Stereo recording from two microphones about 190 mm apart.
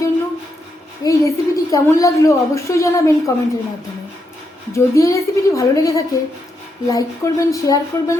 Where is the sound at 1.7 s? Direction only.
15° left (ahead or behind).